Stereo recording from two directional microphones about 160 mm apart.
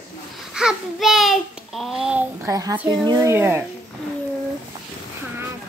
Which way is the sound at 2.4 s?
20° right (ahead or behind).